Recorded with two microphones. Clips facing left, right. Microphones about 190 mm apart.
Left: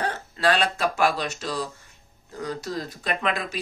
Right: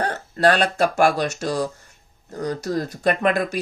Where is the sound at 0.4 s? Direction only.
45° right (ahead or behind).